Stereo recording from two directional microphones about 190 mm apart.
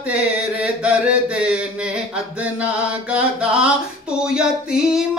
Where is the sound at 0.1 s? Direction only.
5° right (ahead or behind).